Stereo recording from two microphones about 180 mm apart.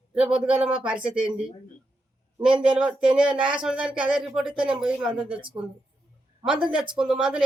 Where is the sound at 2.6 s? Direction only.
5° right (ahead or behind).